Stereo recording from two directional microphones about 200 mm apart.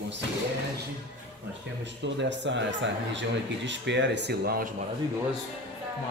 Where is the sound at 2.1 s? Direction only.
60° right (ahead or behind).